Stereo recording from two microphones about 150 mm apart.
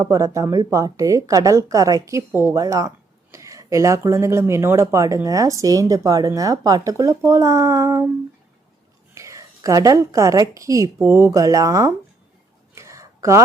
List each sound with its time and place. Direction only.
0.0 s speech: 20° right (ahead or behind)
9.1 s a woman's voice: 20° right (ahead or behind)
12.7 s a sound: 20° right (ahead or behind)